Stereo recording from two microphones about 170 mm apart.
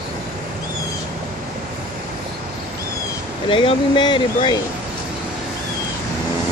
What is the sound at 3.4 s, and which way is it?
Speech, 30° left (ahead or behind).